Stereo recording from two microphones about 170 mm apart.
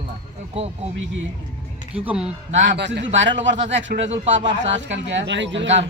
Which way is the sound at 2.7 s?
90° right.